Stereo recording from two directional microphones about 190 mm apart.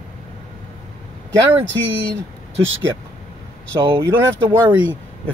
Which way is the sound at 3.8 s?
15° right (ahead or behind).